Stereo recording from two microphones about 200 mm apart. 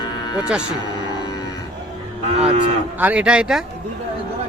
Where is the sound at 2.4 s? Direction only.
30° right (ahead or behind).